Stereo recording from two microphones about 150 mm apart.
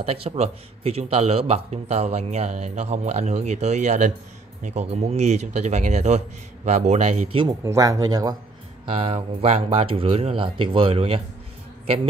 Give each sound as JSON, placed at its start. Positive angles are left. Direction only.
{"t": 0.0, "sound": "a man's voice", "side_deg": -45}
{"t": 7.4, "sound": "speech", "side_deg": -20}
{"t": 8.8, "sound": "speech", "side_deg": -40}